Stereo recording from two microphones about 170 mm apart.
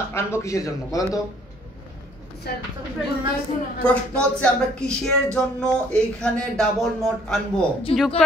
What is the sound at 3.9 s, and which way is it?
Speech, 5° left (ahead or behind).